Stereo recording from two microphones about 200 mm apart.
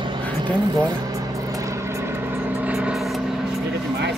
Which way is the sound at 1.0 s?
15° right (ahead or behind).